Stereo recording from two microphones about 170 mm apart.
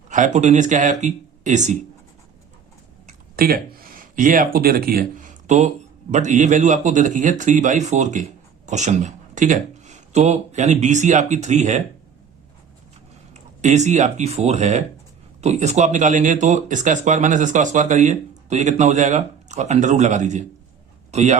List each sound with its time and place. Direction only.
0.1 s speech: 45° right (ahead or behind)
3.3 s speech: 60° right (ahead or behind); by 11.8 s 45° right (ahead or behind)
13.3 s speech: 45° right (ahead or behind)